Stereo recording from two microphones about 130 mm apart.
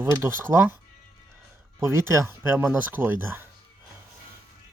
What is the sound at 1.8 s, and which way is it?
Speech, 20° right (ahead or behind).